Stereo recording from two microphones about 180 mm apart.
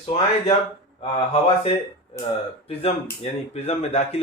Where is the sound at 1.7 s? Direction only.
30° left (ahead or behind).